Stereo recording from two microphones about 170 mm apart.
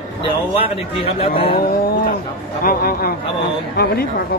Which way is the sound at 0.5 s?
35° left (ahead or behind).